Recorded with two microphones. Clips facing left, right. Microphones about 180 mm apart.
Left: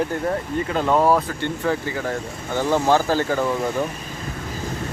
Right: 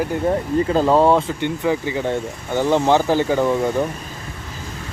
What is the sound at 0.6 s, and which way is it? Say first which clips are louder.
Speech: right 3 dB; 30° right (ahead or behind).